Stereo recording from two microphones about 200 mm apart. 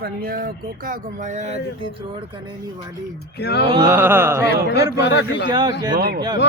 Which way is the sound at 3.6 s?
30° right (ahead or behind).